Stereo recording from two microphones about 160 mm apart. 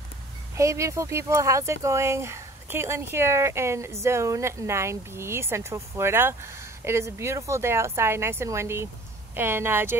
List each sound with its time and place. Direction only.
0.6 s speech: 20° right (ahead or behind)